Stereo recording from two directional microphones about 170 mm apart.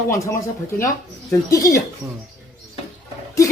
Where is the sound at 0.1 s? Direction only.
20° left (ahead or behind).